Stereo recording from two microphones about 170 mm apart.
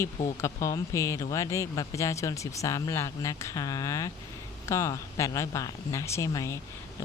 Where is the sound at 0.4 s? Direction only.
20° left (ahead or behind).